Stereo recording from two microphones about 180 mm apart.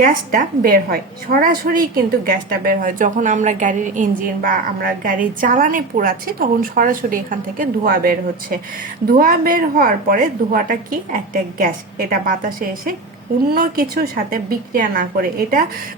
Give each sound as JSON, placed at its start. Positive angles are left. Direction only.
{"t": 0.0, "sound": "a woman's voice", "side_deg": -50}